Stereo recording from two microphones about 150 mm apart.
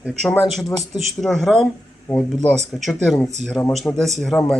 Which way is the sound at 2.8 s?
Centre (ahead or behind).